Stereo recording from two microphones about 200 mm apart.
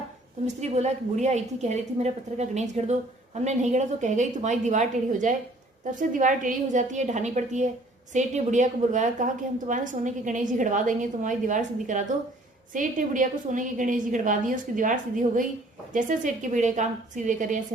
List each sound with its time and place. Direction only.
0.4 s a woman's voice: 35° right (ahead or behind)